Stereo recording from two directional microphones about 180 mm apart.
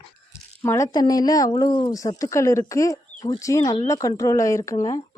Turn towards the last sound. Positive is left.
turn(degrees=20)  # may be behind; listen again after turning